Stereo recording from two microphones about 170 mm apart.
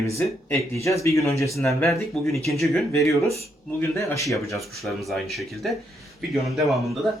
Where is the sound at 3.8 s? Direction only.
15° left (ahead or behind).